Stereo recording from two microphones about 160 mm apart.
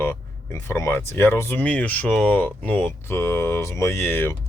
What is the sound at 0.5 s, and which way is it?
Speech, 15° left (ahead or behind).